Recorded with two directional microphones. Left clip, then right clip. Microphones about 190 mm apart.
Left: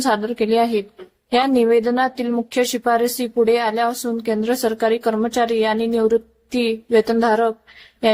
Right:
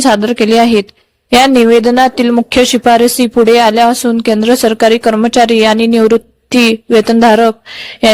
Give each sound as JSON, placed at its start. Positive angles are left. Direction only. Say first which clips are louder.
{"t": 0.0, "sound": "speech", "louder": "right 10 dB", "side_deg": -40}